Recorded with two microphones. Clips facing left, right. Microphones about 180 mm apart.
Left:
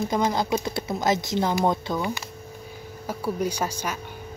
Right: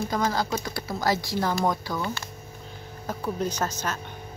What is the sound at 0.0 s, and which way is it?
Speech, 20° left (ahead or behind).